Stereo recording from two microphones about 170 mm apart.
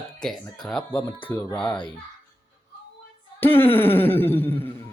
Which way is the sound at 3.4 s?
10° left (ahead or behind).